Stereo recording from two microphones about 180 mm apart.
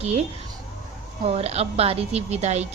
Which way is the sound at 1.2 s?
35° right (ahead or behind).